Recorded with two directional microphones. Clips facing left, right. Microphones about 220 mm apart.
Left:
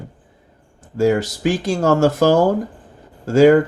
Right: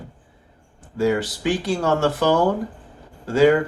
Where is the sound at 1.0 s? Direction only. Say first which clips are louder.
Left 4 dB; 45° left (ahead or behind).